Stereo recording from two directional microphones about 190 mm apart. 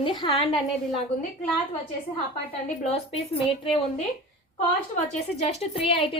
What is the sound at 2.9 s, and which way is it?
Speech, 30° left (ahead or behind).